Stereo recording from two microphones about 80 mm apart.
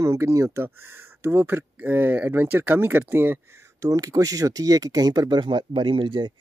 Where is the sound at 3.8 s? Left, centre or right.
Right.